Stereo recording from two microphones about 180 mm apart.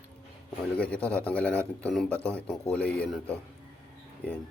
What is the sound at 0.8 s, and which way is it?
Speech, 5° left (ahead or behind).